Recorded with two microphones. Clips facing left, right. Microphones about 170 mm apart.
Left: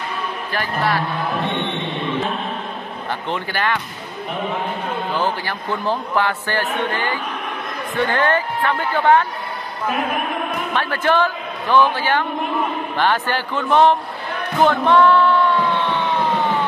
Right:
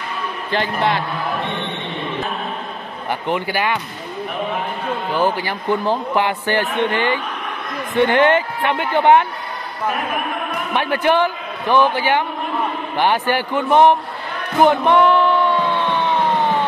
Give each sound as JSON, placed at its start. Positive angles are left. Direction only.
{"t": 0.5, "sound": "speech", "side_deg": -20}
{"t": 3.1, "sound": "a man's voice", "side_deg": -10}
{"t": 5.1, "sound": "a man's voice", "side_deg": -15}
{"t": 10.7, "sound": "a man's voice", "side_deg": -15}